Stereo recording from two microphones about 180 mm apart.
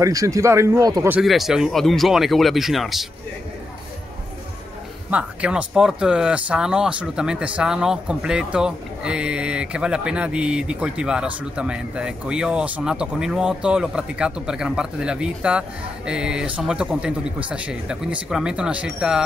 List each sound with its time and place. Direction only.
0.0 s speech: 20° right (ahead or behind)
1.1 s speech: centre (ahead or behind)
5.1 s speech: 5° right (ahead or behind)